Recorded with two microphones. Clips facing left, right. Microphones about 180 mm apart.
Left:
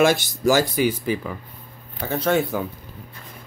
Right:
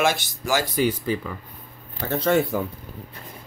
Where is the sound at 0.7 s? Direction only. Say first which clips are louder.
Left 1 dB; 5° left (ahead or behind).